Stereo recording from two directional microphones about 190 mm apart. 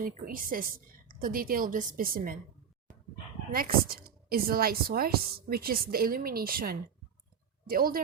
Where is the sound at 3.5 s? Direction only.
50° right (ahead or behind).